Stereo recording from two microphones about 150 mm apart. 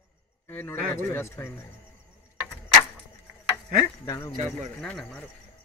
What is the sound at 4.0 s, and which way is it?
Speech, 15° left (ahead or behind).